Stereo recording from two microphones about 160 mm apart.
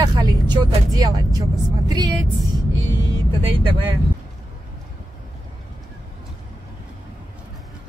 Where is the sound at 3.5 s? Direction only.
30° right (ahead or behind).